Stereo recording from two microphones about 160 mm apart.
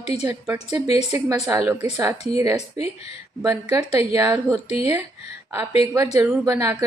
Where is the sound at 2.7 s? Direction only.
40° left (ahead or behind).